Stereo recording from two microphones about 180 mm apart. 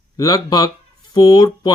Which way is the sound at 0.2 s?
20° left (ahead or behind).